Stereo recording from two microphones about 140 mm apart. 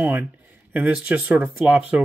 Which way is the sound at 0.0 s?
15° right (ahead or behind).